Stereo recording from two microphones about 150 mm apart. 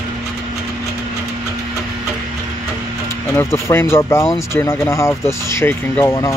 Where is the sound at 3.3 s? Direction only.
15° left (ahead or behind).